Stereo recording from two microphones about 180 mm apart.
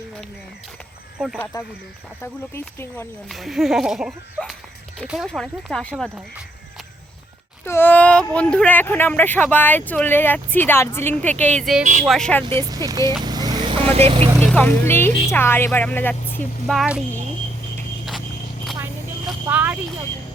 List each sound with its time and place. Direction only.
1.2 s speech: centre (ahead or behind)
2.2 s speech: 15° left (ahead or behind)
3.2 s speech: centre (ahead or behind)
7.6 s speech: 10° left (ahead or behind)
11.8 s speech: 45° right (ahead or behind)
12.0 s speech: centre (ahead or behind)
12.6 s speech: 20° right (ahead or behind)
13.2 s vehicle: 20° right (ahead or behind)
14.4 s speech: 10° left (ahead or behind)
19.5 s a sound: 10° right (ahead or behind)